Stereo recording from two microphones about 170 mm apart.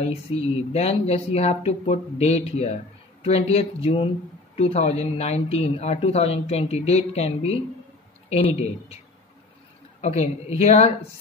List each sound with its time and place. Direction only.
0.0 s speech: 35° left (ahead or behind)
10.0 s speech: 40° left (ahead or behind)